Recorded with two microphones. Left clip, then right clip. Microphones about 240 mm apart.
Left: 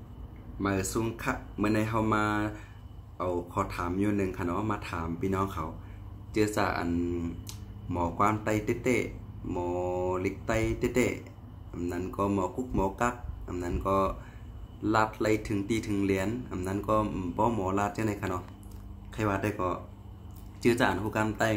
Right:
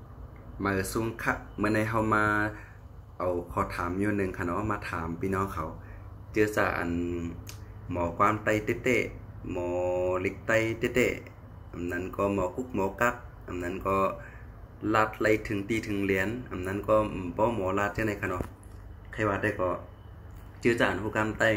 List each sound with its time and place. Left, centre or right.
0.6 s speech: centre